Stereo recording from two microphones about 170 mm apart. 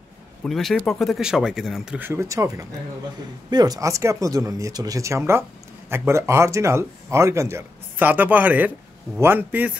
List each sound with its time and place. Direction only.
0.4 s speech: centre (ahead or behind)